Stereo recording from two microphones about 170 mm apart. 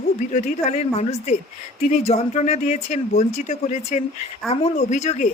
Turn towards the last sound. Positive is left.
turn(degrees=40)  # may be behind; listen again after turning